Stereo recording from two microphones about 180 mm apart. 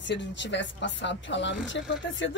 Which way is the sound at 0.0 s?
85° left.